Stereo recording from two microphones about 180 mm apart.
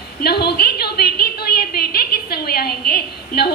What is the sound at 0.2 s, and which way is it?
A woman's voice, 60° left (ahead or behind).